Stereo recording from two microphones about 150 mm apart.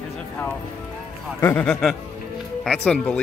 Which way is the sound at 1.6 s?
5° left (ahead or behind).